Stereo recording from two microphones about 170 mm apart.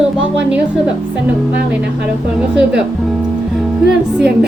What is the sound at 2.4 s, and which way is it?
Speech, 5° right (ahead or behind).